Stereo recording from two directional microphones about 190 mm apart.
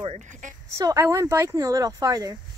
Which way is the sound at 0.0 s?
40° right (ahead or behind).